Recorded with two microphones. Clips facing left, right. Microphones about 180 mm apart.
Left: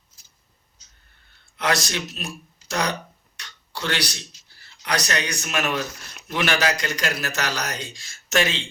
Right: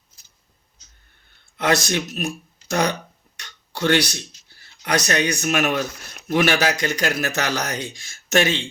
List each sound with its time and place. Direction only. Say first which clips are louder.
1.5 s speech: right 4 dB; 50° right (ahead or behind)
3.3 s a sound: right 2 dB; 50° right (ahead or behind)
4.8 s speech: right 5 dB; 50° right (ahead or behind)